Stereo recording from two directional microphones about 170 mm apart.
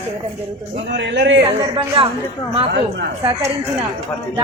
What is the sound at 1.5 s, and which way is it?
Speech, 30° right (ahead or behind).